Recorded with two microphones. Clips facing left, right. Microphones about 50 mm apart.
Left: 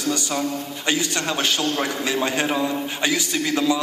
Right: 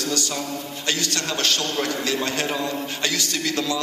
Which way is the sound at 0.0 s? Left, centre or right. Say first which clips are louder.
Left 3 dB; centre.